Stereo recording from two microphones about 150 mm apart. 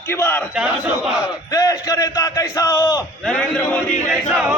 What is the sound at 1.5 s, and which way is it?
A man's voice, 25° left (ahead or behind).